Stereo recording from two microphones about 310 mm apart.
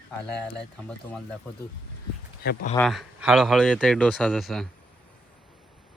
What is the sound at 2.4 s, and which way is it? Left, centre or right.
Speech, left.